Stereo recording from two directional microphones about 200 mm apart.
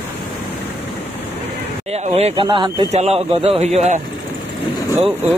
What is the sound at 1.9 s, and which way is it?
A man's voice, 30° right (ahead or behind).